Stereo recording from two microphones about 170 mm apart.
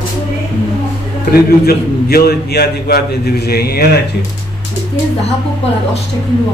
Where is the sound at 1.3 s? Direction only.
65° left (ahead or behind).